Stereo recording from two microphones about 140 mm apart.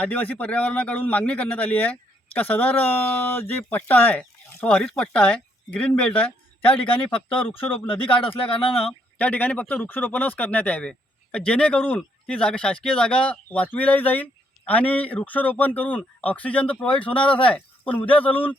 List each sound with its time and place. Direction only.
0.0 s speech: 10° left (ahead or behind)
6.7 s speech: 40° left (ahead or behind)
8.9 s speech: 10° left (ahead or behind)
17.1 s speech: 35° left (ahead or behind)